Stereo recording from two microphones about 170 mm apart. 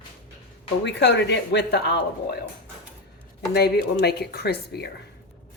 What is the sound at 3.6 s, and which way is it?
Speech, 70° left (ahead or behind).